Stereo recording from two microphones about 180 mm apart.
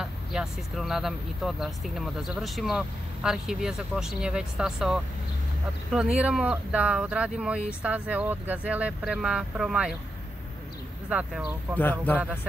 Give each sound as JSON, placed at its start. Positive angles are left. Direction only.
{"t": 0.0, "sound": "speech", "side_deg": -5}
{"t": 6.1, "sound": "speech", "side_deg": -5}
{"t": 11.1, "sound": "speech", "side_deg": -5}
{"t": 11.8, "sound": "speech", "side_deg": 10}